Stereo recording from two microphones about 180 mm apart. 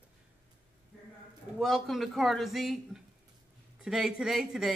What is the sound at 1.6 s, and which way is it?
Speech, centre (ahead or behind).